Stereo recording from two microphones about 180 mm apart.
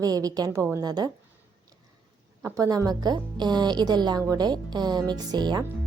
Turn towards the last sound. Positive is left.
turn(degrees=-25)  # may be behind; listen again after turning